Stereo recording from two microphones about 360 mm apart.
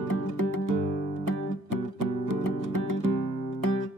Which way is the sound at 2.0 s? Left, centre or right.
Right.